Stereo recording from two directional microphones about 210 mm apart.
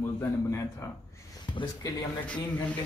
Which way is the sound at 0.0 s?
15° left (ahead or behind).